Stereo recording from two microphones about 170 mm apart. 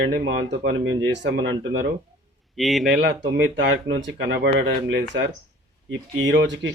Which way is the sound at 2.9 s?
90° right.